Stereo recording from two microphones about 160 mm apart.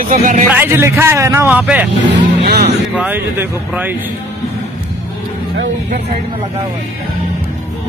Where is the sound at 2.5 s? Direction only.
85° right.